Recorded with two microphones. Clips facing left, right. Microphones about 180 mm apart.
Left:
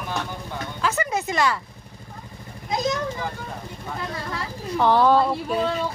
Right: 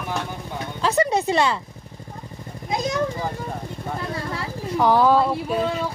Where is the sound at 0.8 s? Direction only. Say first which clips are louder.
Right 5 dB; 30° right (ahead or behind).